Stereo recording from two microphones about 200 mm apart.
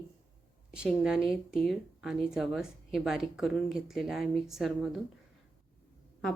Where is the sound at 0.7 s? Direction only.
5° right (ahead or behind).